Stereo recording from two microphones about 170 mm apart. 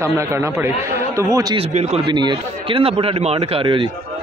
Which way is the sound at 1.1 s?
20° right (ahead or behind).